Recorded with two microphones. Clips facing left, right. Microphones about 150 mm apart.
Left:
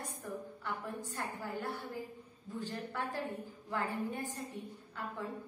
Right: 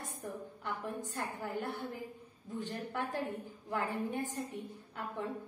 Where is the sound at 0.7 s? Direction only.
20° right (ahead or behind).